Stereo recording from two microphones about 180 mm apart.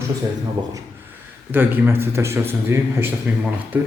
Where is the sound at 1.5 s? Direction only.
10° right (ahead or behind).